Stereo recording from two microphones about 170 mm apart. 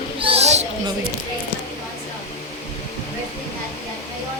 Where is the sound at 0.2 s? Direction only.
35° right (ahead or behind).